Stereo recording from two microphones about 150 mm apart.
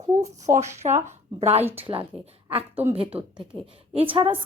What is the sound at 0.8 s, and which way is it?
A woman's voice, 40° right (ahead or behind).